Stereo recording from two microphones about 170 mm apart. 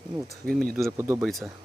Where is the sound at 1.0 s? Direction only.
15° right (ahead or behind).